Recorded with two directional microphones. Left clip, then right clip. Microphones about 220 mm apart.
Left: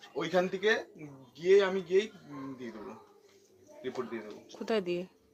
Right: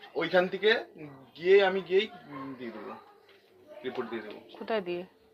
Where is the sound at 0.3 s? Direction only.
30° left (ahead or behind).